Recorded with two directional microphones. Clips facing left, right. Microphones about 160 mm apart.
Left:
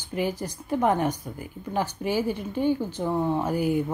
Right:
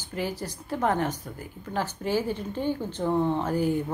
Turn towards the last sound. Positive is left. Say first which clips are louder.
# left 1 dB
turn(degrees=10)  # may be behind; listen again after turning